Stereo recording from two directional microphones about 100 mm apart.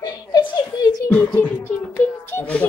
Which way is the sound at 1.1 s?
15° left (ahead or behind).